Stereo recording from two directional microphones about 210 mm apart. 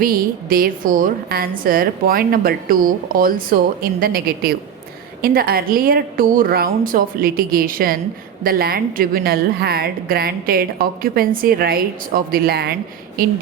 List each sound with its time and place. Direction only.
0.0 s a woman's voice: 45° right (ahead or behind)